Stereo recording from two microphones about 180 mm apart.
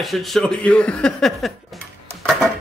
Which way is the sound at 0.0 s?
Centre (ahead or behind).